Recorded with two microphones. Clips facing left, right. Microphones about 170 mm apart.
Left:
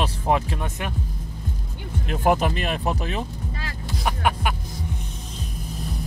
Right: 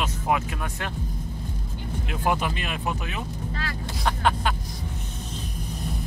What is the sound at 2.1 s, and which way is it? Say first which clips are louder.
Speech: left 5 dB; 40° left (ahead or behind).